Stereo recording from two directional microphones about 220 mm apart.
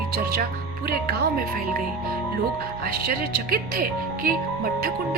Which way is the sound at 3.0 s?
45° right (ahead or behind).